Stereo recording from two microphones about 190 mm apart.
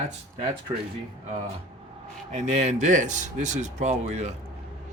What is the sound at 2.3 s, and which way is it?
Speech, 40° right (ahead or behind).